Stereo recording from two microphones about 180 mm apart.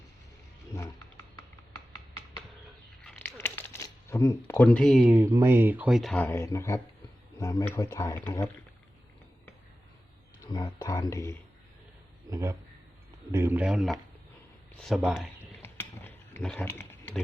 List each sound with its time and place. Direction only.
0.7 s a sound: 15° left (ahead or behind)
3.0 s a sound: 10° left (ahead or behind)
5.1 s speech: 15° right (ahead or behind); by 8.2 s 20° left (ahead or behind)
10.4 s speech: 25° left (ahead or behind)
12.3 s a man's voice: 15° right (ahead or behind)
15.4 s mechanisms: 10° left (ahead or behind)